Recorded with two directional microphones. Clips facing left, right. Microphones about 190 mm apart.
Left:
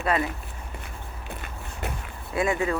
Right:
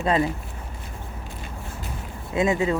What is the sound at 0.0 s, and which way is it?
Speech, 25° right (ahead or behind).